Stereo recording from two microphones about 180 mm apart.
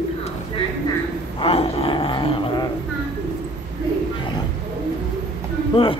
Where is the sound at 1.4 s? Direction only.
30° left (ahead or behind).